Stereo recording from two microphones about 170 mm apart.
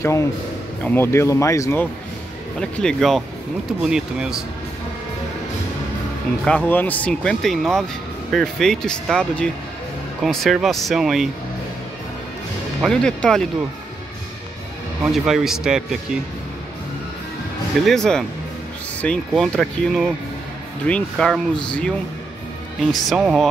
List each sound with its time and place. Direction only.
0.0 s speech: 15° left (ahead or behind)
2.6 s speech: 5° left (ahead or behind)
6.4 s speech: 10° left (ahead or behind)
12.8 s speech: 5° left (ahead or behind)
15.2 s speech: centre (ahead or behind)
17.8 s speech: 5° left (ahead or behind)